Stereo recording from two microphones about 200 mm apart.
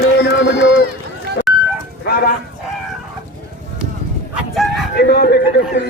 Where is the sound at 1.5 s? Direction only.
Centre (ahead or behind).